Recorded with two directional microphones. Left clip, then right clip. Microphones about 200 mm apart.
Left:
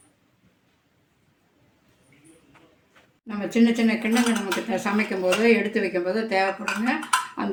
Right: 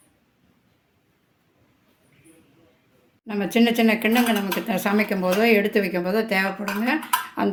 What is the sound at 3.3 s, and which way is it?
Speech, 50° right (ahead or behind).